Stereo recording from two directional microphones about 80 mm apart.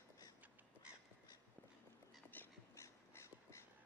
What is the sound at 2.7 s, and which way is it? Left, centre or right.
Crow, left.